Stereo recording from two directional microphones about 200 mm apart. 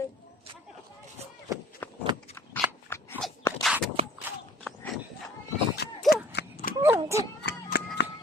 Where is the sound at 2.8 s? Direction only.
10° left (ahead or behind).